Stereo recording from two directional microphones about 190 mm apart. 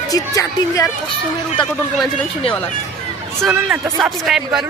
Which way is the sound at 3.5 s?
5° right (ahead or behind).